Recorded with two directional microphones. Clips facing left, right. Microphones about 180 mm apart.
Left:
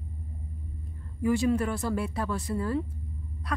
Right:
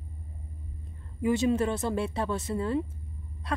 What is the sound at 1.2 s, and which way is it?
A woman's voice, 20° right (ahead or behind).